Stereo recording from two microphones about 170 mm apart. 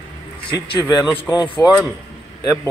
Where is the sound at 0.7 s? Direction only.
25° left (ahead or behind).